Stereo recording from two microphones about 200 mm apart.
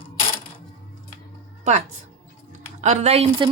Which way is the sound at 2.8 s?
35° right (ahead or behind).